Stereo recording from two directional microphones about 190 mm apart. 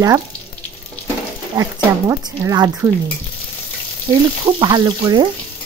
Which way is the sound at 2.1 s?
15° right (ahead or behind).